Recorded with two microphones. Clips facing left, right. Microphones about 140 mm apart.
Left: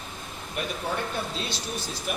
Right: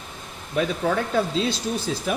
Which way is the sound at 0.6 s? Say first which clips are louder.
Right 8 dB; 90° right.